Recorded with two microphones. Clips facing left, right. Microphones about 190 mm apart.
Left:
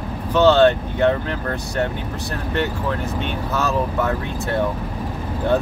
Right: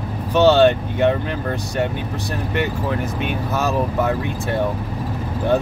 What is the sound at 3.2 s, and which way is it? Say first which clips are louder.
Speech: right 1 dB; 10° right (ahead or behind).